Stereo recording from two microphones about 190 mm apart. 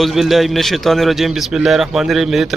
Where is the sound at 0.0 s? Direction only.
Centre (ahead or behind).